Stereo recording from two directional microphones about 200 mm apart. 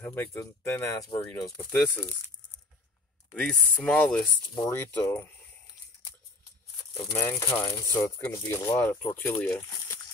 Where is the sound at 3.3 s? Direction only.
5° left (ahead or behind).